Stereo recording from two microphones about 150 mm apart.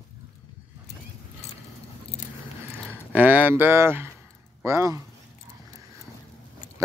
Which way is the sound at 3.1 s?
10° right (ahead or behind).